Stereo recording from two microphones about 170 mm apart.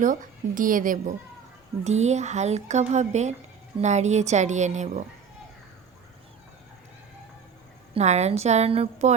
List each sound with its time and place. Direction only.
0.0 s speech: 50° right (ahead or behind)
1.8 s speech: 40° right (ahead or behind)
7.9 s a woman's voice: 40° right (ahead or behind)